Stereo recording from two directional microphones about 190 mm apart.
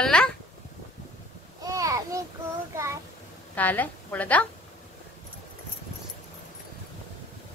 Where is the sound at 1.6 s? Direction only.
20° right (ahead or behind).